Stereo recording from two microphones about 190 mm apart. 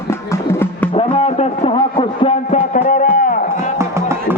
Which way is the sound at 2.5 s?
40° left (ahead or behind).